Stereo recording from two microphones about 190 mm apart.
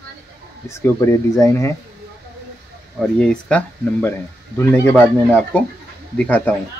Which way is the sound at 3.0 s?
5° left (ahead or behind).